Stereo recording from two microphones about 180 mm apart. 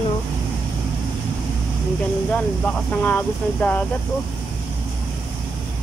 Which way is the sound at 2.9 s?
10° left (ahead or behind).